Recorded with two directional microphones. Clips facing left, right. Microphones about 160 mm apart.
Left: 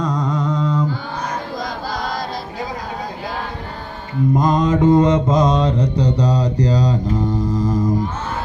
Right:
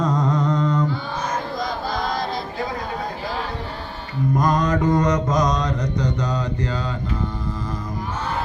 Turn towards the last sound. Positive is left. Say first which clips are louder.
# left 10 dB
turn(degrees=40)  # may be behind; listen again after turning